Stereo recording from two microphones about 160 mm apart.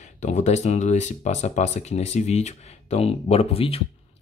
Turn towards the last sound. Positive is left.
turn(degrees=35)  # may be behind; listen again after turning